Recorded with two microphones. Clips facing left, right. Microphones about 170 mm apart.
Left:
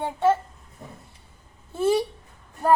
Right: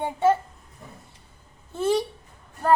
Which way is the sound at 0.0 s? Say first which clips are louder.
Even; 10° right (ahead or behind).